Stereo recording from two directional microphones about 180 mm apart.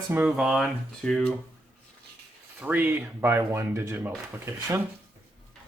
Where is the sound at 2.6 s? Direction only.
10° right (ahead or behind).